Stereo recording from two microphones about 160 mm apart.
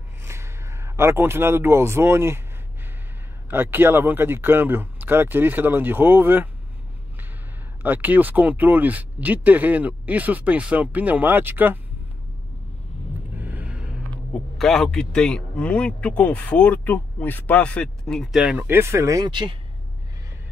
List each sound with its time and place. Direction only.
0.2 s a man's voice: 15° right (ahead or behind)
3.4 s speech: 15° right (ahead or behind)
7.8 s speech: 10° right (ahead or behind)
13.4 s speech: 10° right (ahead or behind); by 19.5 s 30° right (ahead or behind)